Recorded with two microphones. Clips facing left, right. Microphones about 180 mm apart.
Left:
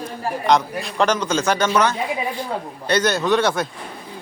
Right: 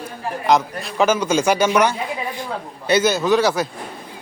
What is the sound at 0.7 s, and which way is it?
A man's voice, centre (ahead or behind).